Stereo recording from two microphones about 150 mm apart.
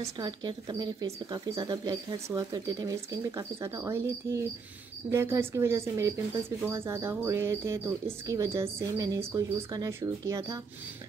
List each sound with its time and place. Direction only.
0.0 s speech: 30° right (ahead or behind)